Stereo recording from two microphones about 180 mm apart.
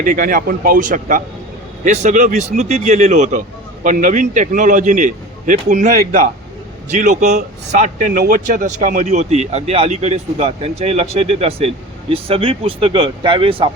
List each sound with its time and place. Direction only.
0.0 s a man's voice: 50° right (ahead or behind); by 13.7 s 30° right (ahead or behind)